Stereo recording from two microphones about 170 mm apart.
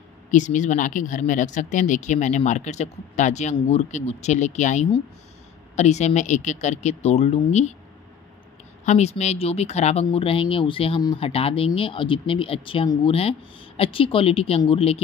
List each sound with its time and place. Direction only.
0.3 s speech: 45° left (ahead or behind)
8.8 s speech: 40° left (ahead or behind)